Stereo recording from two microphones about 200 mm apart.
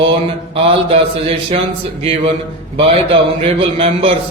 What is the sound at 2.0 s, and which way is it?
Speech, 30° right (ahead or behind).